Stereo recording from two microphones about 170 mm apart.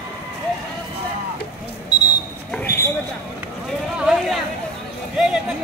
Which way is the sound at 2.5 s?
10° left (ahead or behind).